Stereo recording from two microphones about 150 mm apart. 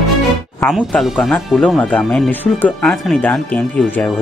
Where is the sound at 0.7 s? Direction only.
5° right (ahead or behind).